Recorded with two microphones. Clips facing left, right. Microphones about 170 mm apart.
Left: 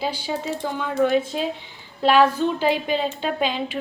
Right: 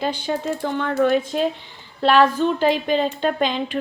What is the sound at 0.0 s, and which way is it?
Speech, 10° left (ahead or behind).